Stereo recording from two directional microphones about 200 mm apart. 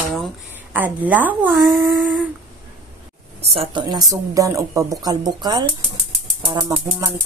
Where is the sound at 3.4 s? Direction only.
30° right (ahead or behind).